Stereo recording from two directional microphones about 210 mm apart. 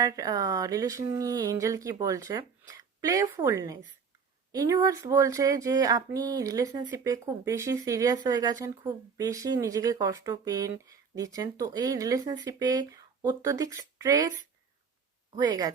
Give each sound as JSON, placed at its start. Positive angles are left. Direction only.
{"t": 0.0, "sound": "speech", "side_deg": -15}
{"t": 15.4, "sound": "speech", "side_deg": -20}